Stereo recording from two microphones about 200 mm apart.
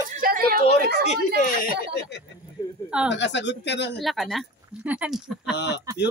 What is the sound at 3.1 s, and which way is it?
Speech, 60° left (ahead or behind).